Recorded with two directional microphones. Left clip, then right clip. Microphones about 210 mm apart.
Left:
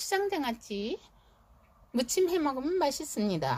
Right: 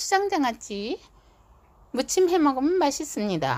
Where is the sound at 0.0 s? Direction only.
15° right (ahead or behind).